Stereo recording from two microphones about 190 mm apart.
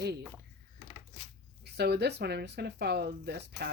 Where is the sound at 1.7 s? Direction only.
60° right (ahead or behind).